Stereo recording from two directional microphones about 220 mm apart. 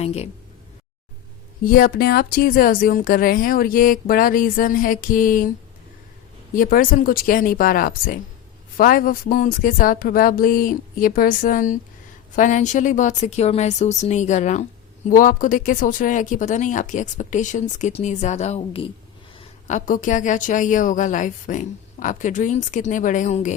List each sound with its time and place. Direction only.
0.0 s speech: 30° left (ahead or behind)
1.6 s a woman's voice: 40° left (ahead or behind)
6.5 s a woman's voice: 40° left (ahead or behind)